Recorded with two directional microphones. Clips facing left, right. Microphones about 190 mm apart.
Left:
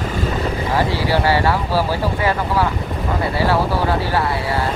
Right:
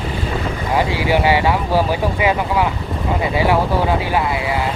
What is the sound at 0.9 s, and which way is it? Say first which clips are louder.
Speech: right 2 dB; 15° right (ahead or behind).